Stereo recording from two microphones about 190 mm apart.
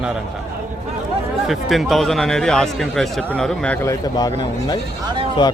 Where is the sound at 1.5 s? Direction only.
Centre (ahead or behind).